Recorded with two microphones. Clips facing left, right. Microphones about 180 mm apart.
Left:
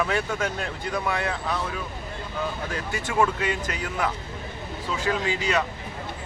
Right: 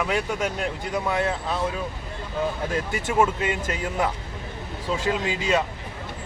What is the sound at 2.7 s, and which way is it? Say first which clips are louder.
Speech: right 2 dB; 20° right (ahead or behind).